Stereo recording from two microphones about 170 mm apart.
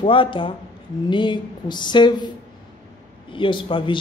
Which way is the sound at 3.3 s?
30° left (ahead or behind).